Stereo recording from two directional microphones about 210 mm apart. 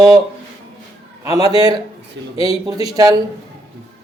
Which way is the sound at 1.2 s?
15° right (ahead or behind).